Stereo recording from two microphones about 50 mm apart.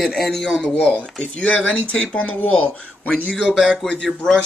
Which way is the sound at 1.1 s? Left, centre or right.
Left.